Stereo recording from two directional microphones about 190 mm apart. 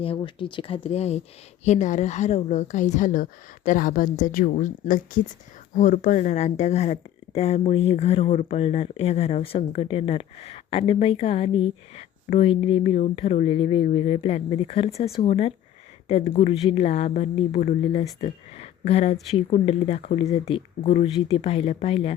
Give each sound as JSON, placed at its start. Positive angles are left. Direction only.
{"t": 0.0, "sound": "speech", "side_deg": 30}